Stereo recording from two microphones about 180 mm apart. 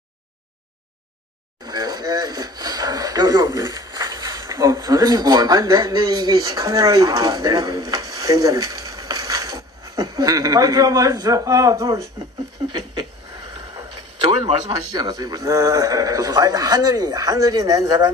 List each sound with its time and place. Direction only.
1.6 s speech: 20° right (ahead or behind)
13.7 s speech: 20° right (ahead or behind)